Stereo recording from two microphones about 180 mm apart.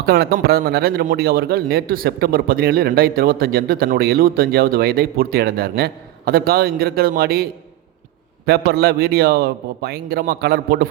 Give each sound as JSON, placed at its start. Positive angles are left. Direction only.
{"t": 0.0, "sound": "speech", "side_deg": -60}
{"t": 8.4, "sound": "speech", "side_deg": -60}